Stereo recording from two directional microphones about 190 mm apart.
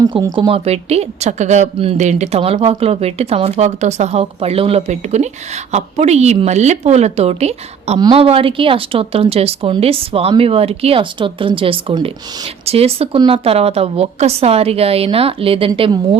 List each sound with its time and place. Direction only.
0.0 s a woman's voice: 20° right (ahead or behind)